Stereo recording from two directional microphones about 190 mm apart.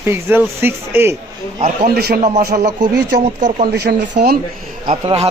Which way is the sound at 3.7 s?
60° right (ahead or behind).